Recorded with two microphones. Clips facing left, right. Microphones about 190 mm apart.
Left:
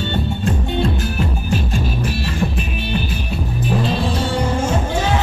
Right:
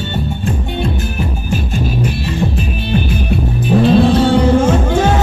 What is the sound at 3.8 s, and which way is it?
Music, 60° right (ahead or behind).